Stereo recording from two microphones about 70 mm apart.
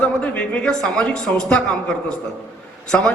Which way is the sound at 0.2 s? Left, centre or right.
Centre.